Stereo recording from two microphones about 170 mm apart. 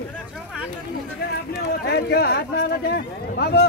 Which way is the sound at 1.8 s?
65° left (ahead or behind).